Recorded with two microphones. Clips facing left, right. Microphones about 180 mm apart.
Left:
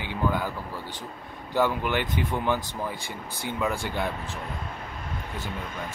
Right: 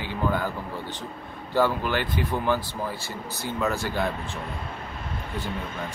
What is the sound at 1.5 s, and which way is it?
Speech, 15° left (ahead or behind).